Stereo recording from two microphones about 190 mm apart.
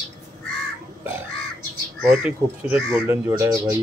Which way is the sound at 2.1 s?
5° right (ahead or behind).